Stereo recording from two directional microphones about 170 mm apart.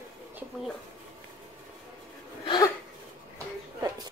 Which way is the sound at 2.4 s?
25° left (ahead or behind).